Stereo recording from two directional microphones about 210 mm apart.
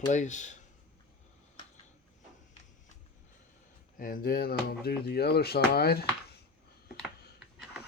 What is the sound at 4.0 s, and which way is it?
Speech, 45° left (ahead or behind).